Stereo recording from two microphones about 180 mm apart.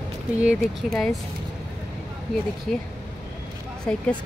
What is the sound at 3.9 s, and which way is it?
Speech, 5° left (ahead or behind).